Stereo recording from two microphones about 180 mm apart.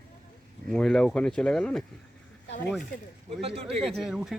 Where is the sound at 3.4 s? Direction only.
35° right (ahead or behind).